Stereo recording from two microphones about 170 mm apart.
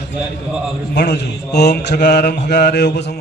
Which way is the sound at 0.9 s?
75° left (ahead or behind).